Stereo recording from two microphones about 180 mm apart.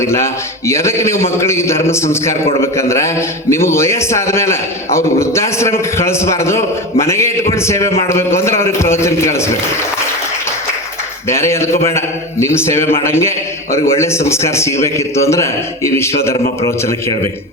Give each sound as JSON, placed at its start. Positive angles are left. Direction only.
{"t": 0.0, "sound": "a man's voice", "side_deg": 15}
{"t": 11.3, "sound": "a man's voice", "side_deg": 15}